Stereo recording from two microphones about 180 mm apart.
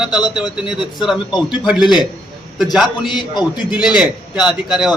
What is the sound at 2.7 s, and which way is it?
Speech, centre (ahead or behind).